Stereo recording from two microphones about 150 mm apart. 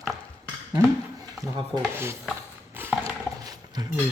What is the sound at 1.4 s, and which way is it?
Stir, 20° right (ahead or behind).